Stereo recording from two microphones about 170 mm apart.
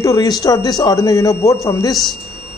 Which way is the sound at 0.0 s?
20° left (ahead or behind).